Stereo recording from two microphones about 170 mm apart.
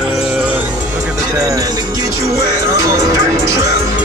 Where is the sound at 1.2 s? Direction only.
20° right (ahead or behind).